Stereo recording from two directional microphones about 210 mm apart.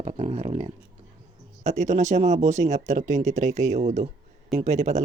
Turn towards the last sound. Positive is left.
turn(degrees=-35)  # may be behind; listen again after turning